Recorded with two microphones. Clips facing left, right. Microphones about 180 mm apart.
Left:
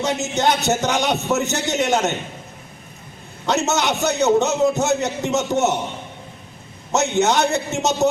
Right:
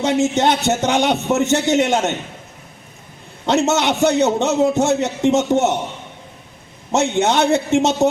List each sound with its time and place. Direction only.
0.0 s a man's voice: 30° right (ahead or behind)
3.4 s a man's voice: 25° right (ahead or behind)
6.9 s a man's voice: 30° right (ahead or behind)